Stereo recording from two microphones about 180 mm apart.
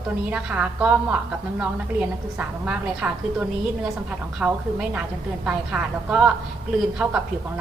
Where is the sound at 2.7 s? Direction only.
5° right (ahead or behind).